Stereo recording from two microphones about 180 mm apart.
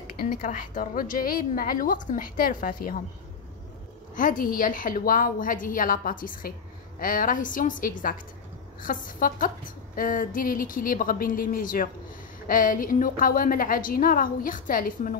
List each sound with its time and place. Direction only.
0.0 s a woman's voice: 50° left (ahead or behind)
4.1 s a woman's voice: 50° left (ahead or behind)